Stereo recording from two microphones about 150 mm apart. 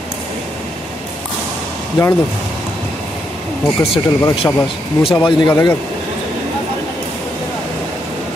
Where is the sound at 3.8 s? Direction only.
40° left (ahead or behind).